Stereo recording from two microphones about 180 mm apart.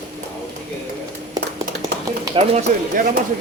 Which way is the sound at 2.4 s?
30° right (ahead or behind).